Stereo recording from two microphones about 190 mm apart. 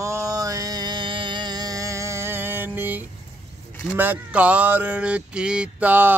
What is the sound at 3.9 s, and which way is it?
Speech, 10° right (ahead or behind).